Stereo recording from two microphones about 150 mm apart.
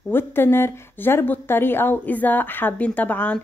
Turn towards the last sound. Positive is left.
turn(degrees=10)  # may be behind; listen again after turning